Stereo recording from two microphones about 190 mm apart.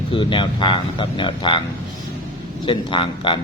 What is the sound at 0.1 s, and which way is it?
A man's voice, 25° left (ahead or behind).